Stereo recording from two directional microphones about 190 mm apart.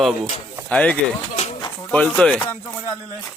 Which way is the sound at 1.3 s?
35° left (ahead or behind).